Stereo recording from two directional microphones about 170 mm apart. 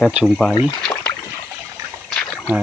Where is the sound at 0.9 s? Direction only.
10° left (ahead or behind).